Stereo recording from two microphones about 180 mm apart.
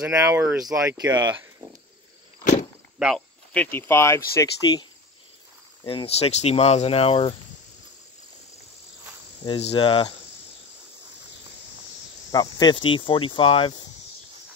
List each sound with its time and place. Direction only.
0.1 s speech: 15° right (ahead or behind)
3.0 s speech: 5° right (ahead or behind)
3.5 s speech: 10° left (ahead or behind)
5.9 s speech: 35° left (ahead or behind)
9.5 s speech: 30° left (ahead or behind)
12.3 s speech: 20° left (ahead or behind)